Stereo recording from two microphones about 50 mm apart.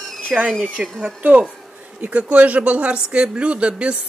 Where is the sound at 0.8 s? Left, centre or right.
Right.